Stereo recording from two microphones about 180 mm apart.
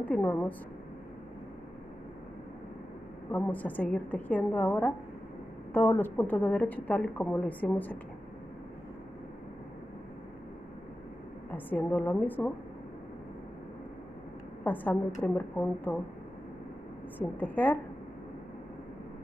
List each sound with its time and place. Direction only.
0.0 s a woman's voice: 10° left (ahead or behind)
3.3 s a woman's voice: 10° left (ahead or behind)
11.5 s a woman's voice: 10° left (ahead or behind)
14.6 s a woman's voice: 10° left (ahead or behind)
17.2 s a woman's voice: 10° left (ahead or behind)